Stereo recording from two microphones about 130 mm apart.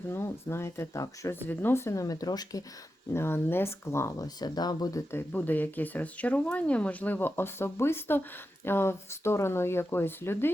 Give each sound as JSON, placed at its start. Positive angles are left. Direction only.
{"t": 0.1, "sound": "speech", "side_deg": 20}
{"t": 3.1, "sound": "speech", "side_deg": 20}
{"t": 5.1, "sound": "speech", "side_deg": 15}